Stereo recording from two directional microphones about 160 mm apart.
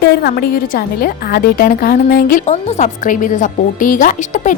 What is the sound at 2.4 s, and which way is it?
A woman's voice, 45° left (ahead or behind).